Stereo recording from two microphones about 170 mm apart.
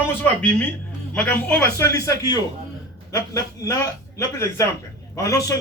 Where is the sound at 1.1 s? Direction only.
10° left (ahead or behind).